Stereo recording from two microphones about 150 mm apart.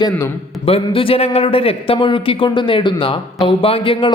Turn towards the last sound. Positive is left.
turn(degrees=35)  # may be behind; listen again after turning